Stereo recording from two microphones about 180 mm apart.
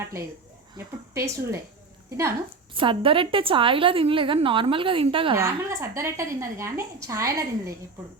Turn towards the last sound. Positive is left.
turn(degrees=-15)  # may be behind; listen again after turning